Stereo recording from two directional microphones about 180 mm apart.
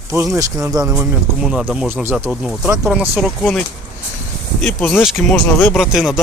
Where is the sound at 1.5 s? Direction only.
5° right (ahead or behind).